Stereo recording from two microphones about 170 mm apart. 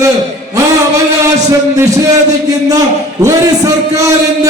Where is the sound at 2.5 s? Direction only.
20° right (ahead or behind).